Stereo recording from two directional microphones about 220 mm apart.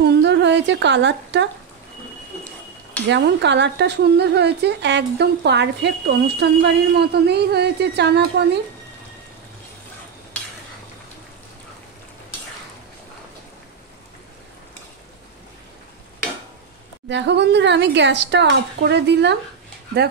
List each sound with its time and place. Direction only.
0.0 s a sound: 50° right (ahead or behind)
3.1 s speech: 50° right (ahead or behind)
10.3 s stir: 5° left (ahead or behind)
17.1 s speech: 50° right (ahead or behind)